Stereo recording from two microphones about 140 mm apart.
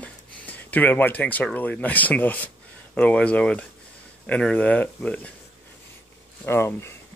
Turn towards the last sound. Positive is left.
turn(degrees=20)  # may be behind; listen again after turning